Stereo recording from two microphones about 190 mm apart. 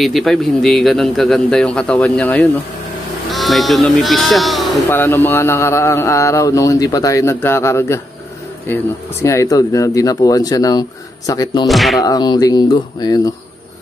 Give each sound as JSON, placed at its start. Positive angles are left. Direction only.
{"t": 0.0, "sound": "a man's voice", "side_deg": 0}
{"t": 4.8, "sound": "speech", "side_deg": 10}
{"t": 11.6, "sound": "a man's voice", "side_deg": 0}
{"t": 12.0, "sound": "speech", "side_deg": 20}